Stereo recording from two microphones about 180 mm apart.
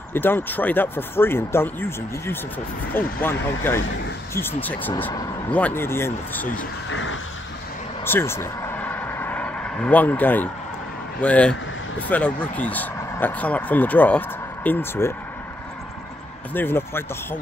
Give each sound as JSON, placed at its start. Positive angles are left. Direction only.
{"t": 0.1, "sound": "speech", "side_deg": 10}
{"t": 6.9, "sound": "a sound", "side_deg": 90}
{"t": 8.0, "sound": "vehicle", "side_deg": 15}
{"t": 11.1, "sound": "speech", "side_deg": 5}
{"t": 16.5, "sound": "speech", "side_deg": 10}